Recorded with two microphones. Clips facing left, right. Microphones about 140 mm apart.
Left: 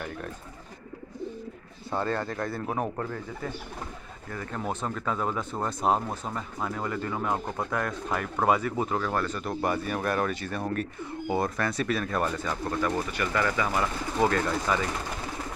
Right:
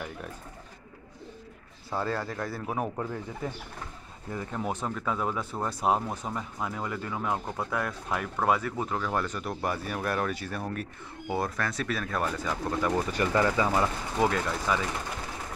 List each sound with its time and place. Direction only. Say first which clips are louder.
2.0 s speech: left 2 dB; 5° right (ahead or behind)
4.3 s speech: right 1 dB; 20° right (ahead or behind)
4.6 s speech: left 1 dB; 10° right (ahead or behind)
9.1 s speech: left 1 dB; 15° right (ahead or behind)
12.6 s speech: right 1 dB; 15° right (ahead or behind)
14.1 s speech: left 3 dB; 5° right (ahead or behind)